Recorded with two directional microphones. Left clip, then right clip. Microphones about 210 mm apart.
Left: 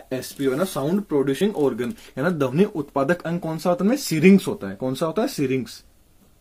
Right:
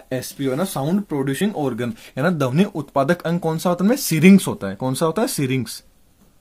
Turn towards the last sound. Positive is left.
turn(degrees=-45)  # may be behind; listen again after turning